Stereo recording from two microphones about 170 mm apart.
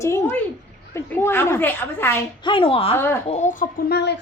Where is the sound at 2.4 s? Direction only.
30° left (ahead or behind).